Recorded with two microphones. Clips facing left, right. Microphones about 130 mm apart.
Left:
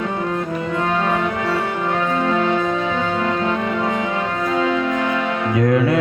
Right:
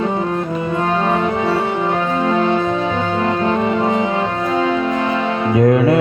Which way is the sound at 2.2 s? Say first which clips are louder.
Right 4 dB; 25° right (ahead or behind).